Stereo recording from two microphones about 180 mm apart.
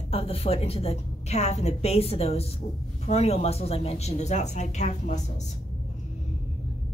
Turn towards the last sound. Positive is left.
turn(degrees=40)  # may be behind; listen again after turning